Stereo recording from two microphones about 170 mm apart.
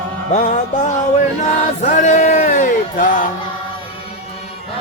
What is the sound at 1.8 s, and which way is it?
Music, 45° left (ahead or behind).